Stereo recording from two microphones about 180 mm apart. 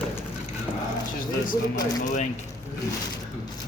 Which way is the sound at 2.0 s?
45° left (ahead or behind).